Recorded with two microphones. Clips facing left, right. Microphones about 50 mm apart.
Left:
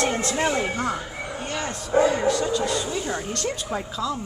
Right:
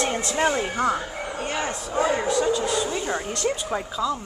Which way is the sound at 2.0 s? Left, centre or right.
Centre.